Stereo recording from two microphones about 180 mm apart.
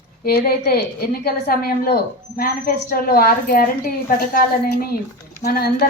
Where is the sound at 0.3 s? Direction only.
60° left (ahead or behind).